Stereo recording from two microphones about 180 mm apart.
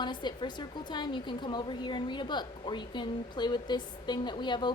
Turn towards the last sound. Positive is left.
turn(degrees=25)  # may be behind; listen again after turning